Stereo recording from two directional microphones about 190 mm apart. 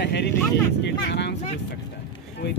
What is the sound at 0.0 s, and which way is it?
Vehicle, 60° left (ahead or behind).